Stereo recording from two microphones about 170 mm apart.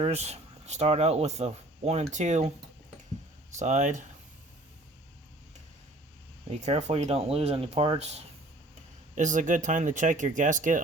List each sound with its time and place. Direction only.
0.0 s speech: 40° right (ahead or behind)
3.6 s speech: 45° right (ahead or behind)
6.5 s speech: 40° right (ahead or behind)